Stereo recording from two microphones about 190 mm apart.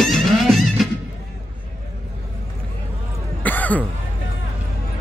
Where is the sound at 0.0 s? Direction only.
Centre (ahead or behind).